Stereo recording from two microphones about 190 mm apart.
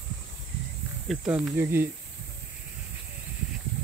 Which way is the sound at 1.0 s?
5° right (ahead or behind).